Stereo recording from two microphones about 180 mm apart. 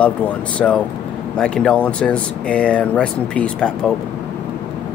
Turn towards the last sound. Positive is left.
turn(degrees=5)  # may be behind; listen again after turning